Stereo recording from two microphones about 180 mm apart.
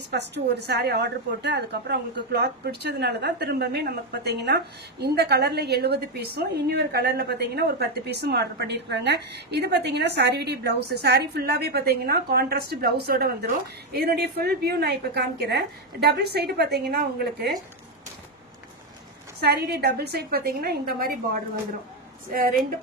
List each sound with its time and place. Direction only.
0.1 s a woman's voice: 70° right (ahead or behind)
19.4 s a woman's voice: 60° right (ahead or behind)
22.3 s a woman's voice: 50° right (ahead or behind)